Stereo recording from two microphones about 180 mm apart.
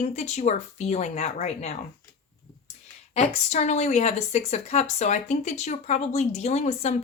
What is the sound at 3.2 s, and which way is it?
Speech, 40° left (ahead or behind).